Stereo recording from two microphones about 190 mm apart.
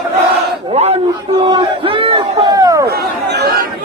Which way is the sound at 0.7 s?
35° right (ahead or behind).